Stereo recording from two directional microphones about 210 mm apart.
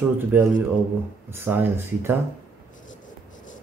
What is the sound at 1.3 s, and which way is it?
Speech, 10° right (ahead or behind).